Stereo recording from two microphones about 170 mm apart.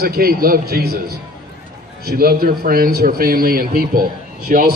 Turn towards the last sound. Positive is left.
turn(degrees=-60)  # may be behind; listen again after turning